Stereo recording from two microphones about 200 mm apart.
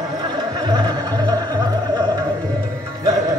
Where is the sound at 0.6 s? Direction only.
20° right (ahead or behind).